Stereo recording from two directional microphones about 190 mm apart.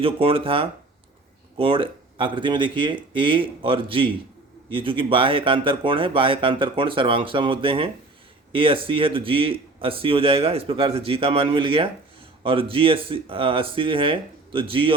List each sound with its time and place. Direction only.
0.0 s speech: 30° right (ahead or behind)